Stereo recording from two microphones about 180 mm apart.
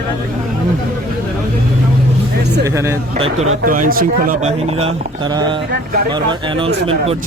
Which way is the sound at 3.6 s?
50° right (ahead or behind).